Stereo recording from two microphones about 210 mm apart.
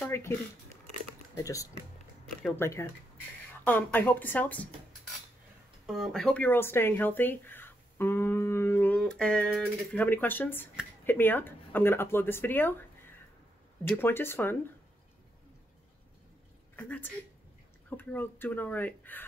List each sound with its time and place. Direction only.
0.1 s speech: 10° left (ahead or behind)
5.9 s speech: centre (ahead or behind)
13.8 s speech: 10° left (ahead or behind)
16.7 s a woman's voice: 10° left (ahead or behind)